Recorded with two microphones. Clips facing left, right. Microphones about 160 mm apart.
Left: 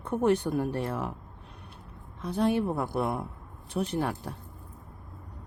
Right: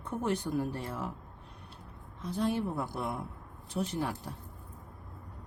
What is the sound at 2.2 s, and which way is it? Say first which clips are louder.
Speech: left 5 dB; 65° left (ahead or behind).